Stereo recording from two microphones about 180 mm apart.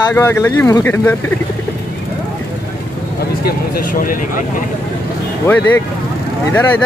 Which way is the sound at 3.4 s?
55° left (ahead or behind).